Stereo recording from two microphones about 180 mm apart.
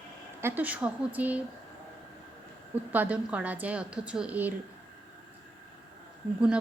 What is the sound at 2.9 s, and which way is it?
A woman's voice, 10° right (ahead or behind).